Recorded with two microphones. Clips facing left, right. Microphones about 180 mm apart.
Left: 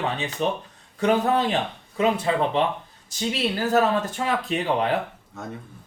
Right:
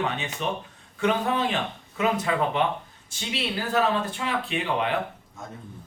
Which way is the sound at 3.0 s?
40° left (ahead or behind).